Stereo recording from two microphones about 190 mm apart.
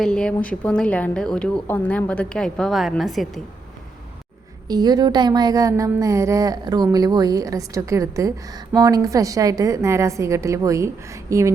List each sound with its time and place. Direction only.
0.0 s a woman's voice: 5° left (ahead or behind)
4.7 s a woman's voice: 20° right (ahead or behind)